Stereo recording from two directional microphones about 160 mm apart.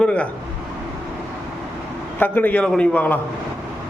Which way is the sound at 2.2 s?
10° left (ahead or behind).